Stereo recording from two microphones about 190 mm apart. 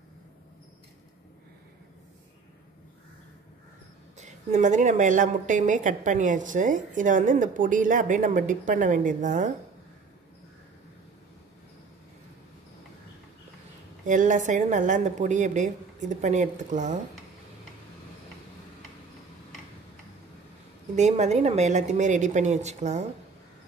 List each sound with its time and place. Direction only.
4.2 s a woman's voice: 40° right (ahead or behind)
14.0 s a woman's voice: 40° right (ahead or behind)
20.9 s a woman's voice: 35° right (ahead or behind)